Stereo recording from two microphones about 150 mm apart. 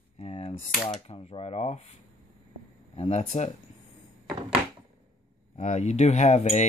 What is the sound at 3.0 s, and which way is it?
Speech, 45° left (ahead or behind).